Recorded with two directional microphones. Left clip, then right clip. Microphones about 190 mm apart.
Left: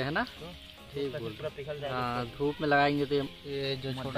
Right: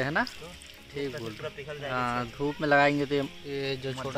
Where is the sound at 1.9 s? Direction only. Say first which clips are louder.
Right 5 dB; 40° right (ahead or behind).